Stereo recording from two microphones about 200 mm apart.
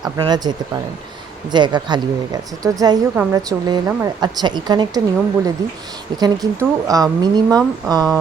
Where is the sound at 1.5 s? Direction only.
20° right (ahead or behind).